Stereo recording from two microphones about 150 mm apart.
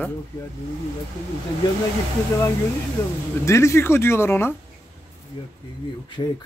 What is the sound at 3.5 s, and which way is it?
Speech, 20° left (ahead or behind).